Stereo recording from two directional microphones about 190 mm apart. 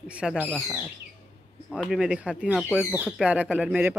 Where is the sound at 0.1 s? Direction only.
5° right (ahead or behind).